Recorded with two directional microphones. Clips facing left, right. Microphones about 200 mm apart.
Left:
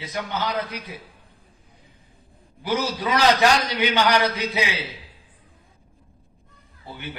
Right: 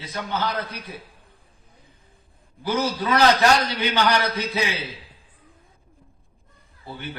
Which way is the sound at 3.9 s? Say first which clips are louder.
Left 1 dB; 15° left (ahead or behind).